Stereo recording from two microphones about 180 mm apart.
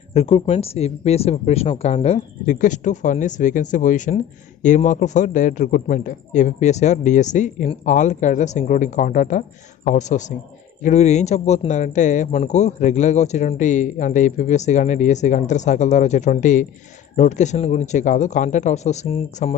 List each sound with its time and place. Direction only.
0.1 s a man's voice: 35° left (ahead or behind)